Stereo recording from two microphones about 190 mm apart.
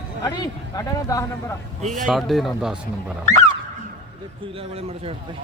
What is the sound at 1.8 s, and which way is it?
Speech, 40° right (ahead or behind).